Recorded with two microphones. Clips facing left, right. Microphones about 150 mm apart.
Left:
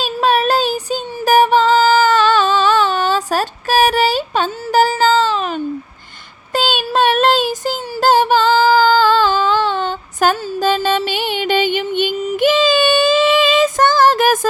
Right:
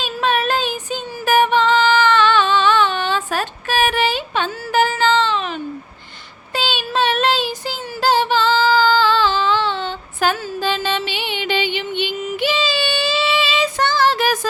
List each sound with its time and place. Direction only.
0.0 s child singing: 40° left (ahead or behind)
6.5 s child singing: 45° left (ahead or behind)